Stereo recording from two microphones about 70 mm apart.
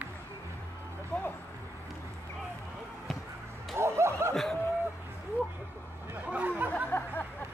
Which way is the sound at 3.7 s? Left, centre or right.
Right.